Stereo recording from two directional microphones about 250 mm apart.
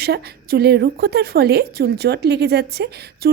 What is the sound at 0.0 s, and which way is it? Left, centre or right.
A woman's voice, right.